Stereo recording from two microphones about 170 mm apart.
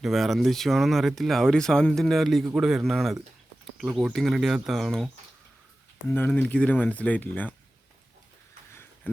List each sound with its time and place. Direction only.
0.0 s speech: centre (ahead or behind)
6.1 s speech: 10° left (ahead or behind)